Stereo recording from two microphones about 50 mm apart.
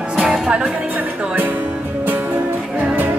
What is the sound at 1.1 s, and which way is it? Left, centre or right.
Music, right.